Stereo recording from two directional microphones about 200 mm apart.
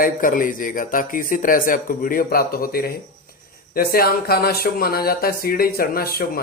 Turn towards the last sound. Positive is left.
turn(degrees=50)  # may be behind; listen again after turning